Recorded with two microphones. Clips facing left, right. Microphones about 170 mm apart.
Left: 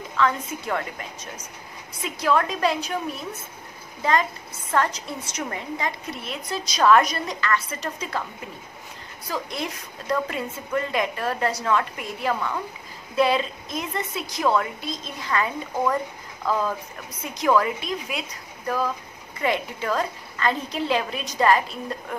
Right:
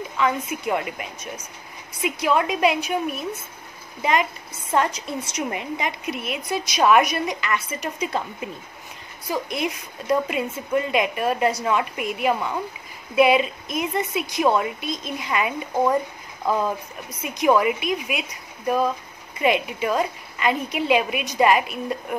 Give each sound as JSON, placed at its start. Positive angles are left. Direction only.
{"t": 0.2, "sound": "a woman's voice", "side_deg": -15}
{"t": 2.0, "sound": "a woman's voice", "side_deg": -20}